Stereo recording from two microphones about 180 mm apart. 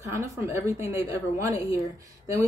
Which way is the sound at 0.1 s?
15° right (ahead or behind).